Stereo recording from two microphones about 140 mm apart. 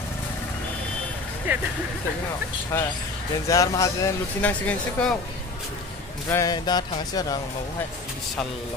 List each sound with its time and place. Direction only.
1.5 s speech: 15° right (ahead or behind)
2.7 s speech: 20° left (ahead or behind)
4.4 s speech: 10° left (ahead or behind)
6.3 s speech: 30° left (ahead or behind)